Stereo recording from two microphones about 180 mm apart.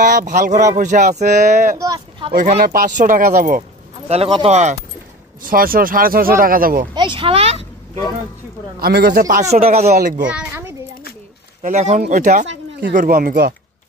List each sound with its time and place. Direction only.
0.0 s speech: 45° right (ahead or behind)
1.8 s speech: 25° right (ahead or behind)
2.6 s speech: 50° right (ahead or behind)
4.1 s speech: 30° right (ahead or behind)
5.4 s speech: 50° right (ahead or behind)
6.9 s speech: 25° right (ahead or behind)
8.7 s speech: 60° right (ahead or behind); by 9.9 s 35° right (ahead or behind)
10.2 s a child's voice: 5° right (ahead or behind)
11.6 s speech: 40° right (ahead or behind)